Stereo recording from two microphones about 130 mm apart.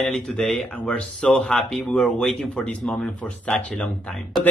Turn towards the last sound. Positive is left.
turn(degrees=5)  # may be behind; listen again after turning